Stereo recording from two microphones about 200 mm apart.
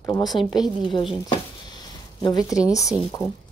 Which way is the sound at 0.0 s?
20° left (ahead or behind).